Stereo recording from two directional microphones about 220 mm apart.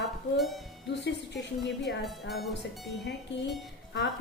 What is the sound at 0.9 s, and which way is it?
A woman's voice, 50° left (ahead or behind).